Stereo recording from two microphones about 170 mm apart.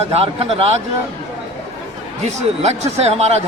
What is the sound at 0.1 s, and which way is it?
Speech, 35° right (ahead or behind).